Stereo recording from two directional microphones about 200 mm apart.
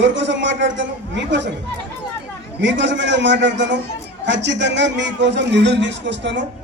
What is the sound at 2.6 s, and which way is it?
A man's voice, 65° right (ahead or behind).